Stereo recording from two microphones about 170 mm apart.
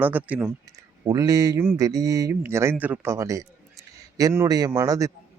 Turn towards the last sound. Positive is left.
turn(degrees=-20)  # may be behind; listen again after turning